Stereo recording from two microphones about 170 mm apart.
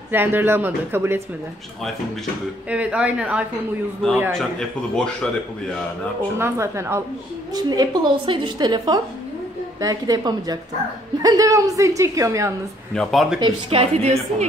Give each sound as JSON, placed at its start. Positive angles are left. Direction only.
{"t": 0.1, "sound": "speech", "side_deg": -10}
{"t": 2.7, "sound": "speech", "side_deg": -5}
{"t": 4.3, "sound": "a man's voice", "side_deg": 5}
{"t": 6.3, "sound": "a woman's voice", "side_deg": -15}
{"t": 12.9, "sound": "a man's voice", "side_deg": 0}
{"t": 13.4, "sound": "a woman's voice", "side_deg": -35}